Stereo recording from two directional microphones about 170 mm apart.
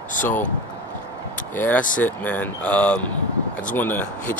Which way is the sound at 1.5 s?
10° left (ahead or behind).